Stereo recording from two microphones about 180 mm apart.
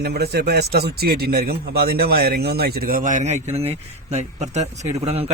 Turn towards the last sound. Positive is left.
turn(degrees=-35)  # may be behind; listen again after turning